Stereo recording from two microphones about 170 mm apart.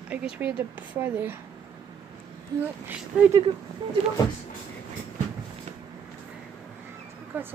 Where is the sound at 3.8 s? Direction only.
25° right (ahead or behind).